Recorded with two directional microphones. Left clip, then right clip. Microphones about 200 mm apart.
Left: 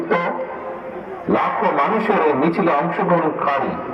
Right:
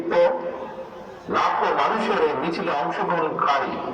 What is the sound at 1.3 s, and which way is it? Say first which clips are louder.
A man's voice: left 3 dB; 45° left (ahead or behind).